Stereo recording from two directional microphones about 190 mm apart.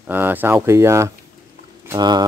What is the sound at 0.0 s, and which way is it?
Speech, 10° right (ahead or behind).